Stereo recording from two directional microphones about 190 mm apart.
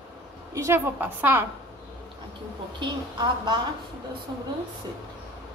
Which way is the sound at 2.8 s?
25° right (ahead or behind).